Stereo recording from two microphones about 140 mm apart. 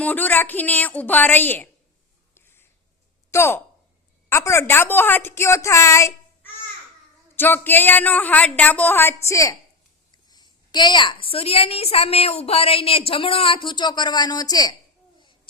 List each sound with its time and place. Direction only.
0.0 s speech: 15° left (ahead or behind)
2.3 s a sound: 15° left (ahead or behind)
3.3 s a woman's voice: 15° left (ahead or behind)